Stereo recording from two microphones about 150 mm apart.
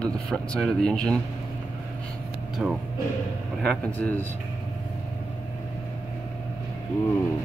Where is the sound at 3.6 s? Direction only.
5° left (ahead or behind).